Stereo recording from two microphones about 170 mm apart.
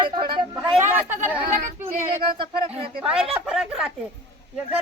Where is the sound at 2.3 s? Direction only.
35° right (ahead or behind).